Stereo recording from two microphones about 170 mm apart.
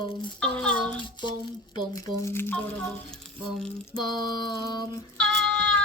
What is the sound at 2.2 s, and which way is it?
Speech, 15° left (ahead or behind).